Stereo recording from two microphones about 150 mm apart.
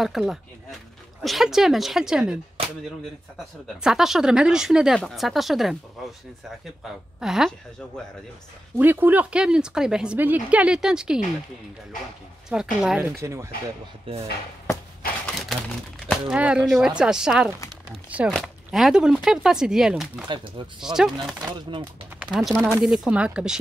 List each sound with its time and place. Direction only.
0.0 s speech: centre (ahead or behind)
2.6 s cap gun: 40° right (ahead or behind)
3.8 s speech: 5° right (ahead or behind)
6.8 s speech: 5° right (ahead or behind)
8.7 s a woman's voice: 15° right (ahead or behind)
12.5 s a woman's voice: 10° right (ahead or behind)
14.1 s speech: 35° right (ahead or behind)
16.1 s speech: 5° right (ahead or behind)
21.5 s speech: 30° right (ahead or behind)
22.2 s speech: 5° right (ahead or behind)